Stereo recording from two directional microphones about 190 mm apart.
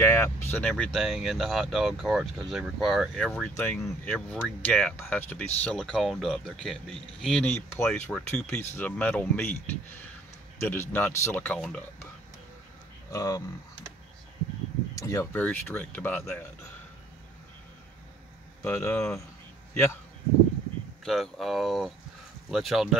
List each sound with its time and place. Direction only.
0.0 s speech: 10° left (ahead or behind)
3.3 s speech: 10° left (ahead or behind)
13.1 s speech: 20° left (ahead or behind)
15.0 s speech: 20° left (ahead or behind)
18.6 s speech: 15° left (ahead or behind)
21.0 s speech: centre (ahead or behind)